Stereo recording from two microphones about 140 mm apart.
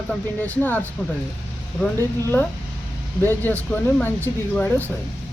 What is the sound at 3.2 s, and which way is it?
Speech, 15° left (ahead or behind).